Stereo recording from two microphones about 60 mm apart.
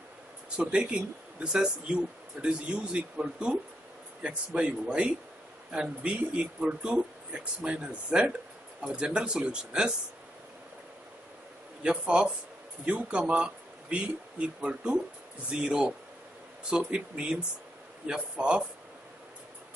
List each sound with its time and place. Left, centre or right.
0.6 s speech: centre
11.8 s speech: centre